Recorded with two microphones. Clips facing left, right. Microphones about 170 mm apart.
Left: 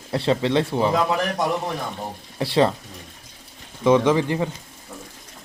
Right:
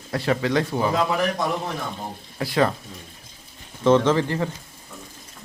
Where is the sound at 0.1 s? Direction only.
25° left (ahead or behind).